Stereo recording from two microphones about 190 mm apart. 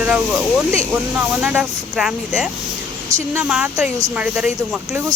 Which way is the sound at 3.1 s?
15° right (ahead or behind).